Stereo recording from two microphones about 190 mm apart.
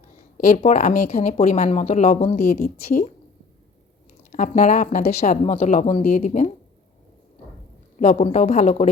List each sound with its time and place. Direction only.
0.5 s speech: 35° left (ahead or behind)
4.3 s speech: 40° left (ahead or behind)
7.9 s speech: 40° left (ahead or behind)